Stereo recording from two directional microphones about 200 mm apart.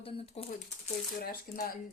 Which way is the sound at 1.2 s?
45° left (ahead or behind).